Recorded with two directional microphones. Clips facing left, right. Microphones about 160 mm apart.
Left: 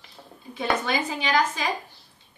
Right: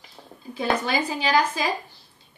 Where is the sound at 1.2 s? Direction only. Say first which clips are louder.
Right 3 dB; 35° right (ahead or behind).